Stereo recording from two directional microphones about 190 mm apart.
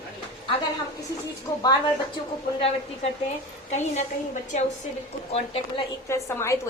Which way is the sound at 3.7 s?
40° left (ahead or behind).